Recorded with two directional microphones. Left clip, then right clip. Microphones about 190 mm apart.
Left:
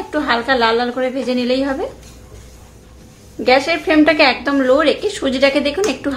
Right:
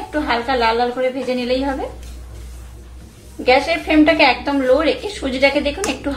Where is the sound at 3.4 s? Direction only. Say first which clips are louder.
Left 1 dB; 30° left (ahead or behind).